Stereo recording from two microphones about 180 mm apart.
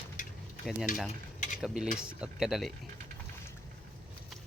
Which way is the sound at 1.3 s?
45° left (ahead or behind).